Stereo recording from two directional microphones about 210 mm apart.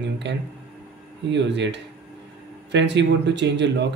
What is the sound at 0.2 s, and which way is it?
A man's voice, 55° right (ahead or behind).